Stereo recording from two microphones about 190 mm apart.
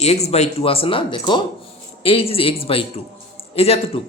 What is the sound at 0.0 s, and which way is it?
A man's voice, 35° left (ahead or behind).